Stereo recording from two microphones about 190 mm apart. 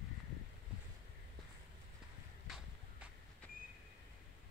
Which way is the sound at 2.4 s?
5° right (ahead or behind).